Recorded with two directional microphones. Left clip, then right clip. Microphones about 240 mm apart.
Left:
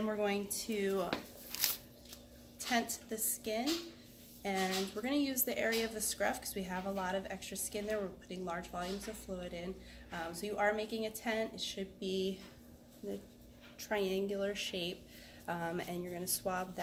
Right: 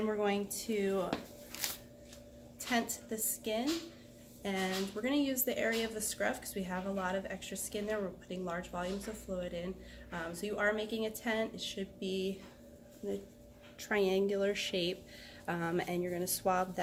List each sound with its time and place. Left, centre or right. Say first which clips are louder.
0.0 s a woman's voice: right 2 dB; centre
2.6 s a woman's voice: even; centre
13.7 s speech: right 4 dB; right